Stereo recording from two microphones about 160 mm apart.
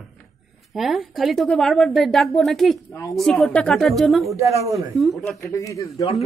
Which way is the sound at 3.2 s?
5° left (ahead or behind).